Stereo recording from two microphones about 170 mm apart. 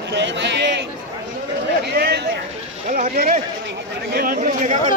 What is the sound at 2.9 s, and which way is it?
Speech, 60° right (ahead or behind).